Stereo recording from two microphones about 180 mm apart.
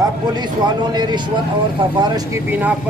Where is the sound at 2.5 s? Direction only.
10° right (ahead or behind).